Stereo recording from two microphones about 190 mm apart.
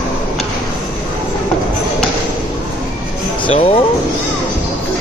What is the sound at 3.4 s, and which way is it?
Music, 30° left (ahead or behind).